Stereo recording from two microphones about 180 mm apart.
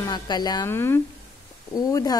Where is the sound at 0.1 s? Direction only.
25° left (ahead or behind).